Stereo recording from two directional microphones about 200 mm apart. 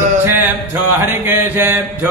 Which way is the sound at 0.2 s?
10° right (ahead or behind).